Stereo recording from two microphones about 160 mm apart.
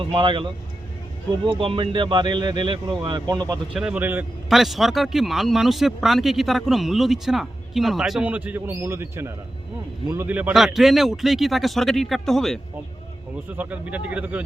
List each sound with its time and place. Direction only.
0.0 s a man's voice: 30° right (ahead or behind)
3.8 s speech: 10° right (ahead or behind)
13.5 s speech: 10° right (ahead or behind)